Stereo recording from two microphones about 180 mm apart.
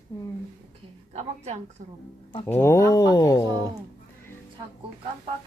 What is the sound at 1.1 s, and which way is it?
Speech, 35° right (ahead or behind).